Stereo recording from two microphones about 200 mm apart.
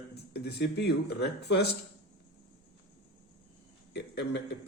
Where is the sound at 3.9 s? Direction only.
60° left (ahead or behind).